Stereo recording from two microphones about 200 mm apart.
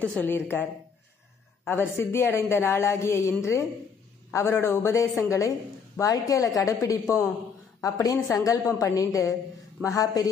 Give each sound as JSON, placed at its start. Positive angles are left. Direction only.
{"t": 0.0, "sound": "a woman's voice", "side_deg": 5}